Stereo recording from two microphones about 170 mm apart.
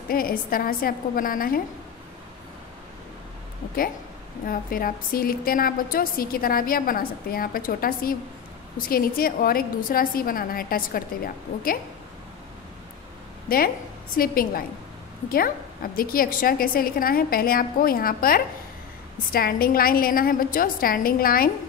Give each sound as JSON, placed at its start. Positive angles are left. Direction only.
{"t": 0.1, "sound": "a woman's voice", "side_deg": 60}
{"t": 4.5, "sound": "a woman's voice", "side_deg": 55}
{"t": 13.5, "sound": "a woman's voice", "side_deg": 60}